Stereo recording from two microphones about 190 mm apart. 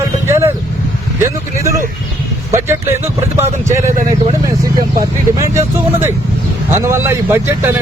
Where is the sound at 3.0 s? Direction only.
15° right (ahead or behind).